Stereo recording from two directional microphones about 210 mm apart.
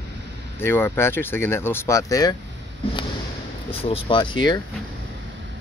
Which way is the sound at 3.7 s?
25° left (ahead or behind).